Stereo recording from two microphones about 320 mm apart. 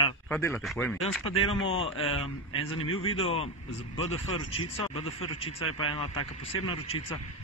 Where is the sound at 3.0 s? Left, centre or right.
Centre.